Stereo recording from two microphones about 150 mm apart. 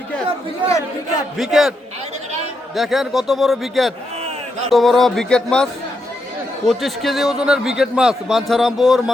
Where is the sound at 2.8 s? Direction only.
Centre (ahead or behind).